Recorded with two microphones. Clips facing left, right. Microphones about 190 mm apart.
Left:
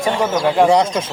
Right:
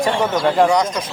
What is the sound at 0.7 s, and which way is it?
Speech, 30° left (ahead or behind).